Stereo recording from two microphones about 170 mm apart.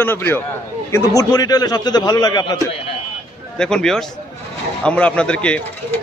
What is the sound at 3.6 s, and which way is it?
A man's voice, 5° left (ahead or behind).